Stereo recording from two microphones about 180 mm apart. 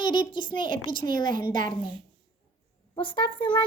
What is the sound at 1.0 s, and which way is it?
Speech, 50° right (ahead or behind).